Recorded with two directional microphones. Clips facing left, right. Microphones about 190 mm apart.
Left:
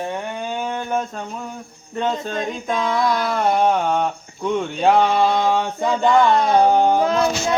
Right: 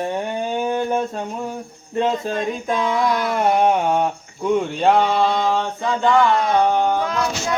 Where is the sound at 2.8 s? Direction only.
10° right (ahead or behind); by 5.9 s 10° left (ahead or behind).